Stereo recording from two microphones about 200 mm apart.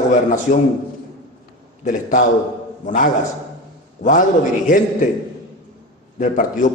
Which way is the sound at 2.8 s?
40° left (ahead or behind).